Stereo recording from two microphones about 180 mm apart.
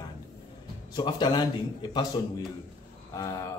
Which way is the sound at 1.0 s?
20° left (ahead or behind).